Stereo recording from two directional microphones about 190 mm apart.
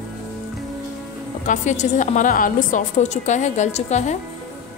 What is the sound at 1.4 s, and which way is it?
A woman's voice, 40° left (ahead or behind).